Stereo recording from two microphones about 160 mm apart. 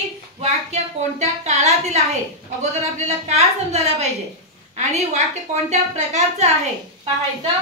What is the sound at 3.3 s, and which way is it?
A woman's voice, 40° right (ahead or behind).